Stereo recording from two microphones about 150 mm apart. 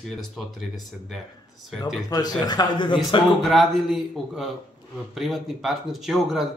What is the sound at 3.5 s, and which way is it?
Speech, centre (ahead or behind).